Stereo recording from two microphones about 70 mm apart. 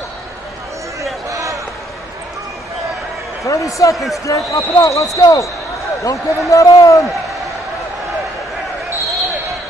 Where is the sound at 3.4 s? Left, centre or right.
Left.